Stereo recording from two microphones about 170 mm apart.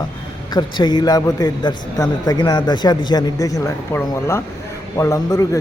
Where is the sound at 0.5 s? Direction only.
25° left (ahead or behind).